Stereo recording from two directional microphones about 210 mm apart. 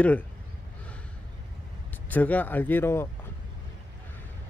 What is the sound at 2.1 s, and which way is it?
Speech, 10° left (ahead or behind).